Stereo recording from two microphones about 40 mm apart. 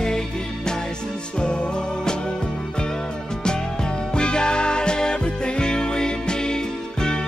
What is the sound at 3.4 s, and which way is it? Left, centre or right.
Music, left.